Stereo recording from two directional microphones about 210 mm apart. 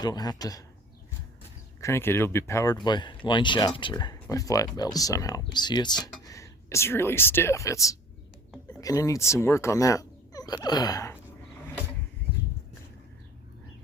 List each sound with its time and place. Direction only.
0.0 s speech: 20° left (ahead or behind)
1.8 s speech: 10° left (ahead or behind)